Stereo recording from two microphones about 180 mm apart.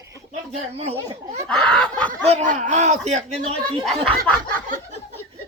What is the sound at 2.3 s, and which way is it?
Speech, 40° right (ahead or behind).